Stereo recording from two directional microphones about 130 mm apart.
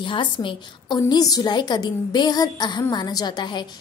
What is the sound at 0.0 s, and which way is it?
A woman's voice, 40° left (ahead or behind).